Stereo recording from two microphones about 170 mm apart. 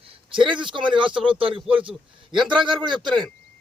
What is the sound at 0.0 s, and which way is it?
A man's voice, 30° right (ahead or behind).